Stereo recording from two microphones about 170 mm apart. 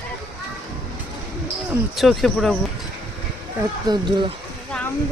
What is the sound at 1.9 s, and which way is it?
Speech, centre (ahead or behind).